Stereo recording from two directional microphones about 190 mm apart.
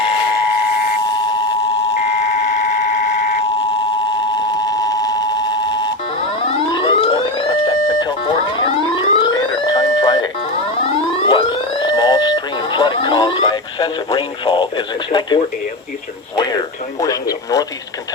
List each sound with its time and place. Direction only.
1.0 s steam whistle: 20° left (ahead or behind)
2.0 s a sound: 35° left (ahead or behind)
4.3 s a sound: 20° left (ahead or behind)
6.4 s siren: 30° left (ahead or behind)
10.8 s alarm: 25° left (ahead or behind)
16.3 s radio: 20° left (ahead or behind)